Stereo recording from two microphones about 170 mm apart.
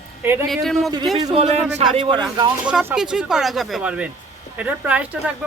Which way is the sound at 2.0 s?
30° right (ahead or behind).